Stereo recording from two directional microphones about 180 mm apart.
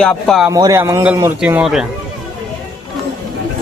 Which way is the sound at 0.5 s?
20° right (ahead or behind).